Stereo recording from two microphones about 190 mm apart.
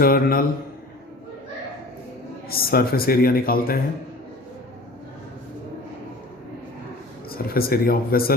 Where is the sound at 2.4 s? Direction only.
55° left (ahead or behind).